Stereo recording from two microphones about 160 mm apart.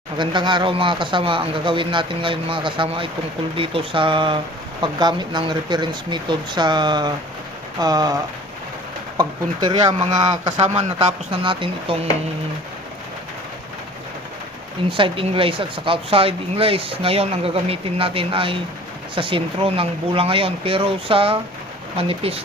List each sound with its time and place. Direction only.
0.2 s speech: 30° right (ahead or behind)
14.8 s speech: 30° right (ahead or behind)